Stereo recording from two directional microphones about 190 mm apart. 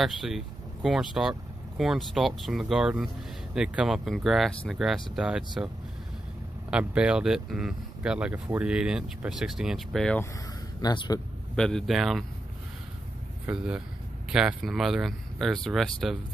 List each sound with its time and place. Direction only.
0.0 s speech: centre (ahead or behind)
6.7 s speech: 5° right (ahead or behind)
10.8 s speech: 20° left (ahead or behind)
11.5 s speech: 5° left (ahead or behind)
13.5 s speech: 5° right (ahead or behind)